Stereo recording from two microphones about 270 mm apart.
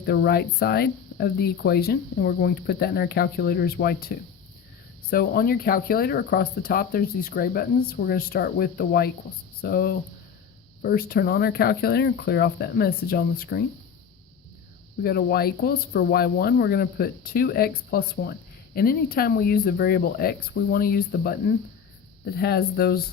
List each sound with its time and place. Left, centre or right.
0.0 s speech: left
15.0 s speech: left